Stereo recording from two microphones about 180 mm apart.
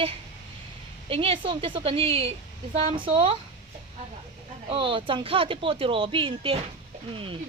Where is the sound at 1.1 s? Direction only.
30° right (ahead or behind).